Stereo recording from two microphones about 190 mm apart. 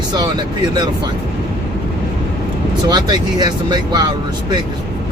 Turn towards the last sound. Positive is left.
turn(degrees=-20)  # may be behind; listen again after turning